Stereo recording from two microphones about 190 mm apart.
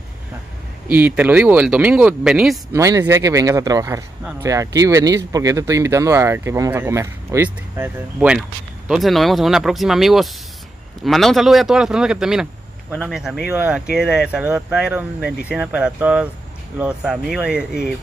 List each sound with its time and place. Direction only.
0.8 s speech: 10° right (ahead or behind)
2.7 s speech: 15° right (ahead or behind)